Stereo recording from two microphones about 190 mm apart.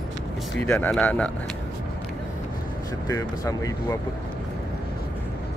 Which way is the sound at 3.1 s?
20° left (ahead or behind).